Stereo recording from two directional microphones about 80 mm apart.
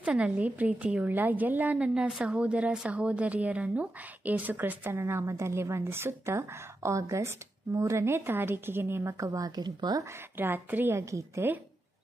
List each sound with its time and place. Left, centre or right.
0.0 s a woman's voice: centre
4.9 s a woman's voice: right
9.3 s speech: right
10.3 s a woman's voice: right
11.0 s a woman's voice: right